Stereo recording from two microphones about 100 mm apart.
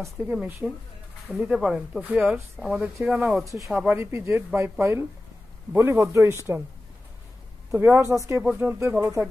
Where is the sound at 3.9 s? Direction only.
25° right (ahead or behind).